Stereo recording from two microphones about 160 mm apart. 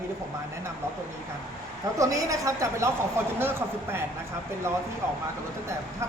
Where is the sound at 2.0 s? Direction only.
20° right (ahead or behind).